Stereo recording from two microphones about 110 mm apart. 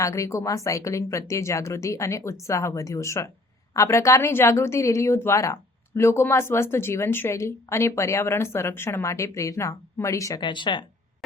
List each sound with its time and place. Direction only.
0.0 s speech: 25° left (ahead or behind)
10.4 s speech: 45° left (ahead or behind)